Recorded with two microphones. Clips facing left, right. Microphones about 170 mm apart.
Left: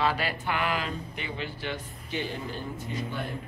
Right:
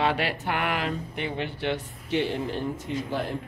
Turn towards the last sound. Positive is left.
turn(degrees=-90)